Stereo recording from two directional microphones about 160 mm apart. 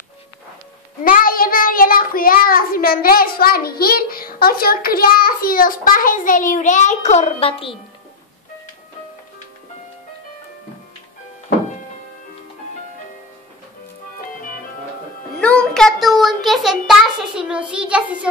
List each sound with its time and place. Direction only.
1.0 s a child's voice: 60° left (ahead or behind); by 7.7 s 35° left (ahead or behind)
15.4 s child singing: 5° left (ahead or behind)